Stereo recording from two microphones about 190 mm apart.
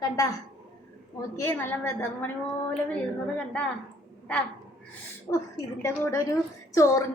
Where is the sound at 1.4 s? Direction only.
10° left (ahead or behind).